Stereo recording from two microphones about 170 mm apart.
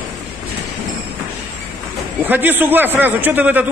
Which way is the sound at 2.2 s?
10° right (ahead or behind).